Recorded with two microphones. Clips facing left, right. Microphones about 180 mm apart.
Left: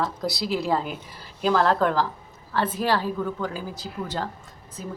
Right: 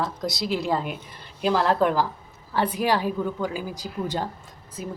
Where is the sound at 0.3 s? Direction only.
Centre (ahead or behind).